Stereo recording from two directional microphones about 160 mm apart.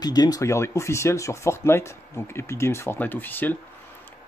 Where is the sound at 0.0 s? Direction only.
25° left (ahead or behind).